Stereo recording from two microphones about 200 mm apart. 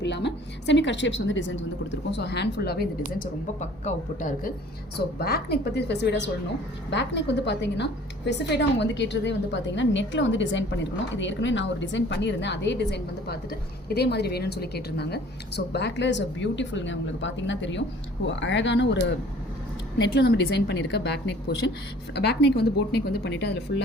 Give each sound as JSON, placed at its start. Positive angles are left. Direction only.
{"t": 0.0, "sound": "a woman's voice", "side_deg": 60}
{"t": 3.6, "sound": "a woman's voice", "side_deg": 40}
{"t": 5.2, "sound": "a woman's voice", "side_deg": 50}
{"t": 20.1, "sound": "a woman's voice", "side_deg": 55}